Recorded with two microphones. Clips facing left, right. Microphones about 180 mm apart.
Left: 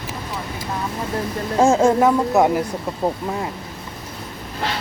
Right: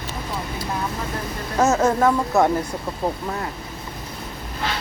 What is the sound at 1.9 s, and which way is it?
Speech, 15° left (ahead or behind).